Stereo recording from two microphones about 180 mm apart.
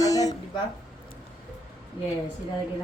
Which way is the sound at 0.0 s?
20° left (ahead or behind).